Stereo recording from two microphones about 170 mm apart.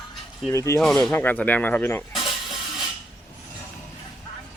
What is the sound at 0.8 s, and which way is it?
Speech, centre (ahead or behind).